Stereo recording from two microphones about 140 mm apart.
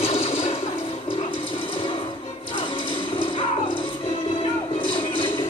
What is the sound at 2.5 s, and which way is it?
Music, 35° left (ahead or behind).